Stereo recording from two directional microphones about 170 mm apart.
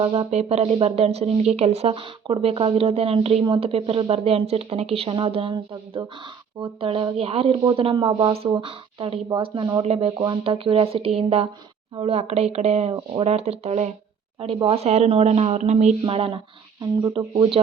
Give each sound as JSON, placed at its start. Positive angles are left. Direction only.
{"t": 0.0, "sound": "speech", "side_deg": -35}